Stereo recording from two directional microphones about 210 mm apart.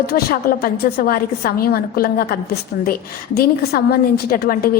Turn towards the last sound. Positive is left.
turn(degrees=45)  # may be behind; listen again after turning